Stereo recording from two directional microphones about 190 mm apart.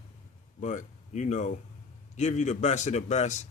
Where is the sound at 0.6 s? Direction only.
40° left (ahead or behind).